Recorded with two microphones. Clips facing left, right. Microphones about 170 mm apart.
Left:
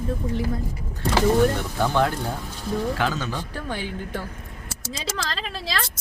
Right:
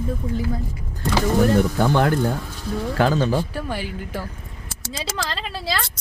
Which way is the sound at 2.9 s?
35° right (ahead or behind).